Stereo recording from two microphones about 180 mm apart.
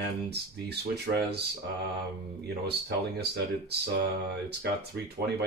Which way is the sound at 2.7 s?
65° right (ahead or behind).